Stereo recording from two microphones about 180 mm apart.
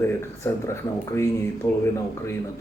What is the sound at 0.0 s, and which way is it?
A man's voice, 15° left (ahead or behind).